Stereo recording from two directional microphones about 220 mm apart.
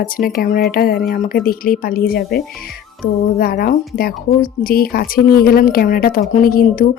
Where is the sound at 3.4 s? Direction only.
45° left (ahead or behind).